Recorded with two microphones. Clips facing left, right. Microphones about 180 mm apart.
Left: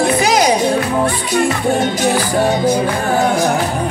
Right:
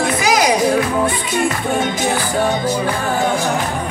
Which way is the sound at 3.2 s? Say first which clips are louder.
Left 5 dB; 40° left (ahead or behind).